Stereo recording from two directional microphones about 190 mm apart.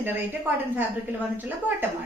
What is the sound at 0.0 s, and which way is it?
Speech, 10° right (ahead or behind).